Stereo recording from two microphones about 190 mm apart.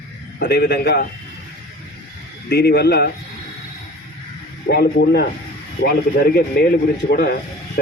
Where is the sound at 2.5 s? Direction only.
60° left (ahead or behind).